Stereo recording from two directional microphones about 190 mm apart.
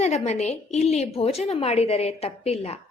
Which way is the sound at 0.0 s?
35° left (ahead or behind).